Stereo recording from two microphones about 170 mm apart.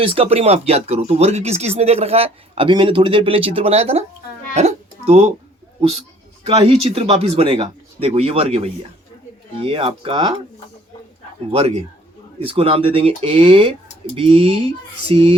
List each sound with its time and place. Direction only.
0.0 s speech: 30° right (ahead or behind)
4.5 s music: 40° right (ahead or behind)
6.4 s speech: 35° right (ahead or behind)
12.4 s speech: 30° right (ahead or behind)